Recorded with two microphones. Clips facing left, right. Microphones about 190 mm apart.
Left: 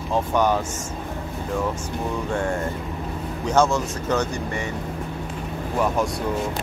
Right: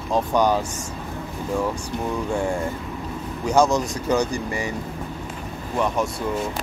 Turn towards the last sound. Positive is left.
turn(degrees=-10)  # may be behind; listen again after turning